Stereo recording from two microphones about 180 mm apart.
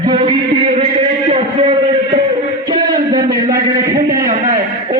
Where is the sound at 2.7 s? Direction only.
25° right (ahead or behind).